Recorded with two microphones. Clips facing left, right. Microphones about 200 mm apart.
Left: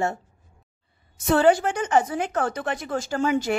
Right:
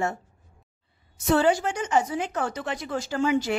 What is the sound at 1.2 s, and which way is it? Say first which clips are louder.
A woman's voice: left 3 dB; 55° left (ahead or behind).